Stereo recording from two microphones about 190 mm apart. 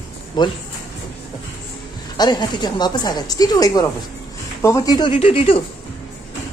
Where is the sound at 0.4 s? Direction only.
20° left (ahead or behind).